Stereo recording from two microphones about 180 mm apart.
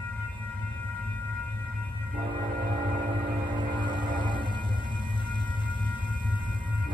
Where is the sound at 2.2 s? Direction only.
25° right (ahead or behind).